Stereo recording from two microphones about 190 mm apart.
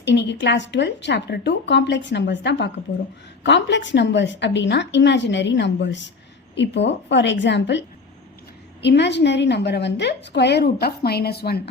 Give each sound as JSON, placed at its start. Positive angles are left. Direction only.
{"t": 0.0, "sound": "a woman's voice", "side_deg": 65}